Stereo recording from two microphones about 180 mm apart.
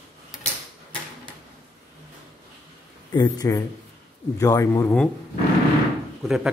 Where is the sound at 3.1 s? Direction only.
20° left (ahead or behind).